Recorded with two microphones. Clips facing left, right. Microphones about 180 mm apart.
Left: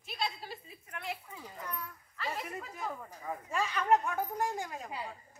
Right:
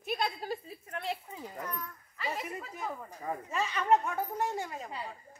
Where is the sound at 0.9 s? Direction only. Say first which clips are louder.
Right 4 dB; 30° right (ahead or behind).